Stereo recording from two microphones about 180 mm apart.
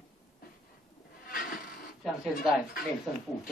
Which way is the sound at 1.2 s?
50° left (ahead or behind).